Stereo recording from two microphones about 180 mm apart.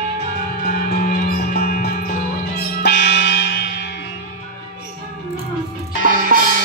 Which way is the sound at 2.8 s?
65° left (ahead or behind).